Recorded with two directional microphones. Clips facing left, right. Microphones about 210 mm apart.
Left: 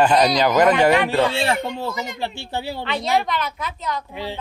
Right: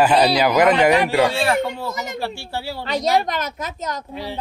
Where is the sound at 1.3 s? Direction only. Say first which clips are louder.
Right 2 dB; 25° left (ahead or behind).